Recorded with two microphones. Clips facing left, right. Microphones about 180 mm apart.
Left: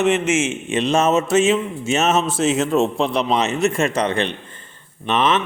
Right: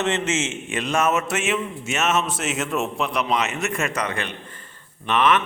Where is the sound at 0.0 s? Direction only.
15° left (ahead or behind).